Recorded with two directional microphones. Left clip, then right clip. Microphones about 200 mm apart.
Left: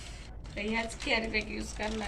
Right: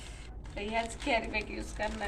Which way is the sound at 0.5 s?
5° right (ahead or behind).